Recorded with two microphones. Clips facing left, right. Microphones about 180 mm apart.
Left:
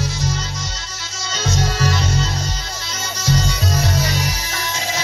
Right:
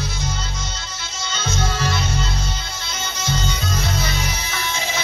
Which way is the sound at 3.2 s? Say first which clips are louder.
Left 5 dB; 40° left (ahead or behind).